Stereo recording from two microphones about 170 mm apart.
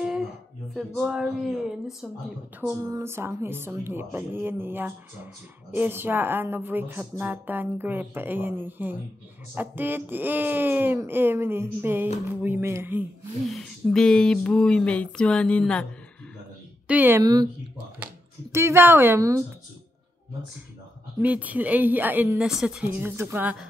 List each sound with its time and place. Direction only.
0.7 s speech: 5° right (ahead or behind)
2.8 s a woman's voice: 15° right (ahead or behind)
13.5 s speech: 5° left (ahead or behind)
16.8 s a woman's voice: 10° right (ahead or behind)
17.2 s speech: 25° right (ahead or behind)
21.2 s a woman's voice: 10° right (ahead or behind)